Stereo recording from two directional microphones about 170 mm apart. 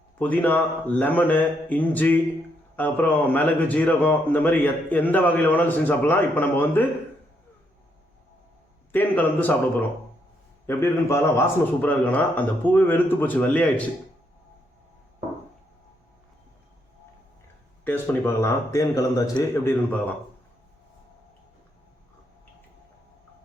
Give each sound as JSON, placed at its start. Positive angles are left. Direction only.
{"t": 0.2, "sound": "speech", "side_deg": 10}
{"t": 8.9, "sound": "speech", "side_deg": 10}
{"t": 10.7, "sound": "speech", "side_deg": 15}
{"t": 17.8, "sound": "speech", "side_deg": 10}